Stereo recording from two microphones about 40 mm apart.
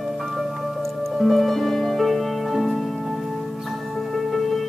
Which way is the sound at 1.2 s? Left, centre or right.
Centre.